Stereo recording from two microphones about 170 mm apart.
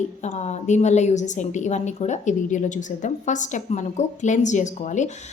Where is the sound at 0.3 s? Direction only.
40° left (ahead or behind).